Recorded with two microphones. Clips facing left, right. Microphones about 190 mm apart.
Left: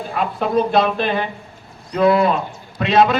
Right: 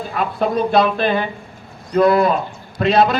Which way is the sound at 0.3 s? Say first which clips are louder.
Right 1 dB; 40° right (ahead or behind).